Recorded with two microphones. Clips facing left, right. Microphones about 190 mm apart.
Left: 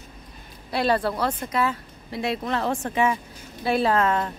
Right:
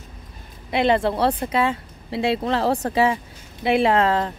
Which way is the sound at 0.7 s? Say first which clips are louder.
Right 4 dB; 20° right (ahead or behind).